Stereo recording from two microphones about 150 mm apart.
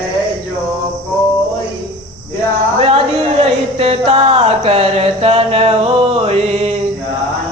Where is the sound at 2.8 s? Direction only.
40° right (ahead or behind).